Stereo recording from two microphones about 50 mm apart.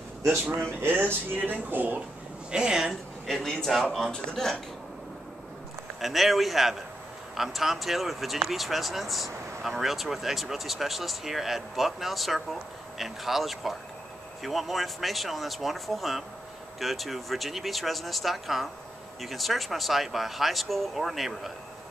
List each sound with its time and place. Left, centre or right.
0.8 s speech: right
2.5 s speech: centre
3.3 s a man's voice: centre
5.9 s speech: centre